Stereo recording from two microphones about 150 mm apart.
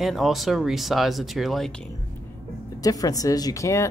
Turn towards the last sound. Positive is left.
turn(degrees=20)  # may be behind; listen again after turning